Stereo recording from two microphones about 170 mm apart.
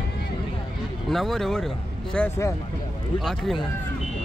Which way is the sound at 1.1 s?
Centre (ahead or behind).